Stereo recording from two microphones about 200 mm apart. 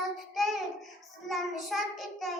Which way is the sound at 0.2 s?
Centre (ahead or behind).